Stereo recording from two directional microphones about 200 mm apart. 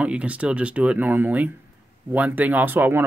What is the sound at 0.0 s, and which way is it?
Speech, 5° right (ahead or behind).